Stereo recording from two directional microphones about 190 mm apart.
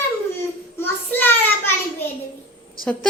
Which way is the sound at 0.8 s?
10° left (ahead or behind).